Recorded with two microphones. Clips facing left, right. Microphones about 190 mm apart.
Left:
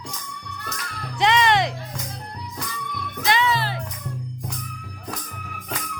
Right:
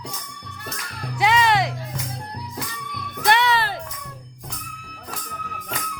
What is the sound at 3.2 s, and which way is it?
Music, 65° right (ahead or behind).